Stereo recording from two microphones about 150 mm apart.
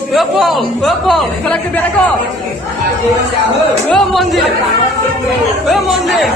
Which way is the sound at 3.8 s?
Centre (ahead or behind).